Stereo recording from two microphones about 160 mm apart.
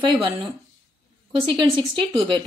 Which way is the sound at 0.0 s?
30° right (ahead or behind).